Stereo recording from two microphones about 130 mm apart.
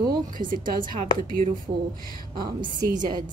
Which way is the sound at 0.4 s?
90° right.